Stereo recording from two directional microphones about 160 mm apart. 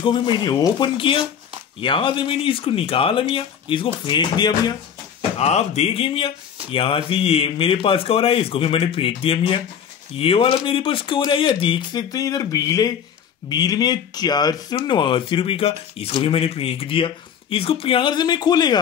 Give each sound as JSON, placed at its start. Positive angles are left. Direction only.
{"t": 0.5, "sound": "speech", "side_deg": 25}
{"t": 5.4, "sound": "speech", "side_deg": 40}